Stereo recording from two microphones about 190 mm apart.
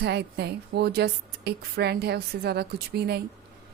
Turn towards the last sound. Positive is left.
turn(degrees=-60)  # may be behind; listen again after turning